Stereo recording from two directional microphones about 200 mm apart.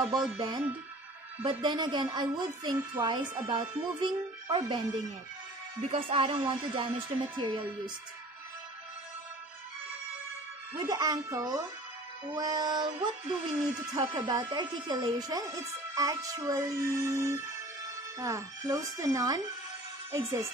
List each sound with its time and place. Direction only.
0.1 s a woman's voice: 20° right (ahead or behind)
5.9 s a woman's voice: 25° right (ahead or behind)
10.9 s a woman's voice: 20° right (ahead or behind)